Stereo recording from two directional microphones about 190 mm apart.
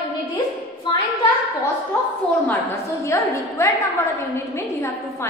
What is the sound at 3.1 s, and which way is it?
Speech, 15° left (ahead or behind).